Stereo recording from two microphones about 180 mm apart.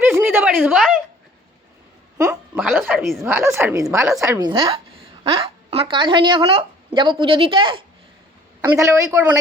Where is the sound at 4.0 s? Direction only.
Centre (ahead or behind).